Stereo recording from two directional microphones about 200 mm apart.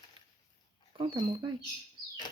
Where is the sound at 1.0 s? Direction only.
25° right (ahead or behind).